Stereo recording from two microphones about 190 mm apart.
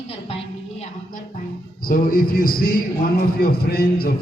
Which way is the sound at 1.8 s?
50° left (ahead or behind).